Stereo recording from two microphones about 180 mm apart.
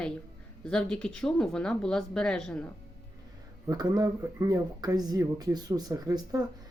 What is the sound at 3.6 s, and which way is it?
Speech, 20° right (ahead or behind).